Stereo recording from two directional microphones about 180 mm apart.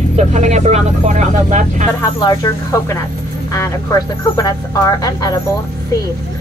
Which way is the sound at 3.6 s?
20° left (ahead or behind).